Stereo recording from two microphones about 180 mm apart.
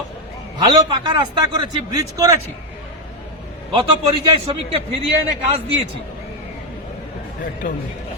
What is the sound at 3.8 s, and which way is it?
A man's voice, 30° right (ahead or behind).